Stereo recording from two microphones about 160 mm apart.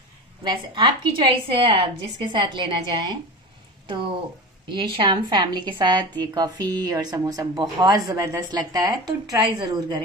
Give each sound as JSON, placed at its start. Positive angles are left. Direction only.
{"t": 0.4, "sound": "a woman's voice", "side_deg": -30}
{"t": 4.6, "sound": "a woman's voice", "side_deg": -30}